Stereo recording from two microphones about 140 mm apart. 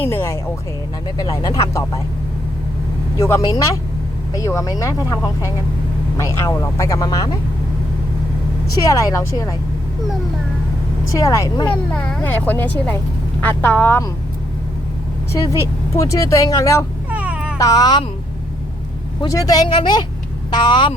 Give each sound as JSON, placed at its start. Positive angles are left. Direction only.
{"t": 0.0, "sound": "speech", "side_deg": 15}
{"t": 1.2, "sound": "speech", "side_deg": 30}
{"t": 3.2, "sound": "speech", "side_deg": 20}
{"t": 8.9, "sound": "speech", "side_deg": 25}
{"t": 11.1, "sound": "speech", "side_deg": 25}
{"t": 11.7, "sound": "speech", "side_deg": 10}
{"t": 15.3, "sound": "speech", "side_deg": 20}
{"t": 17.1, "sound": "a sound", "side_deg": -10}
{"t": 17.6, "sound": "speech", "side_deg": 25}
{"t": 19.3, "sound": "speech", "side_deg": 25}